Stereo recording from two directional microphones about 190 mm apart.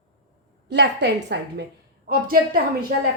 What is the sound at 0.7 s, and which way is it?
Speech, 65° right (ahead or behind).